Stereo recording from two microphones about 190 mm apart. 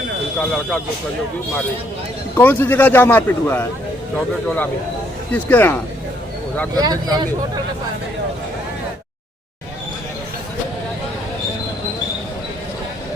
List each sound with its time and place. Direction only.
0.3 s speech: 5° left (ahead or behind)
2.3 s speech: 10° left (ahead or behind)
6.7 s speech: 20° right (ahead or behind)